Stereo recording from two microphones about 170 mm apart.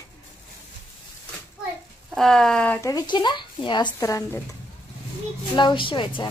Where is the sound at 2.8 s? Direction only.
20° left (ahead or behind).